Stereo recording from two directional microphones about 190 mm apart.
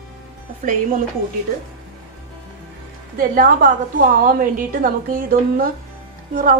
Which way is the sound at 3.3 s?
50° right (ahead or behind).